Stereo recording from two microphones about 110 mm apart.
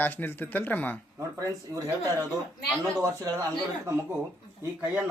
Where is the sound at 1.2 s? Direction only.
25° right (ahead or behind).